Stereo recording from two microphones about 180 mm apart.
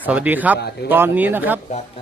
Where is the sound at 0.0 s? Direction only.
10° right (ahead or behind).